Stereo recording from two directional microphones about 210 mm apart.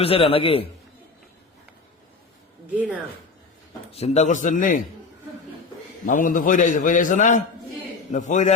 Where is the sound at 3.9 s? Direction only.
30° left (ahead or behind).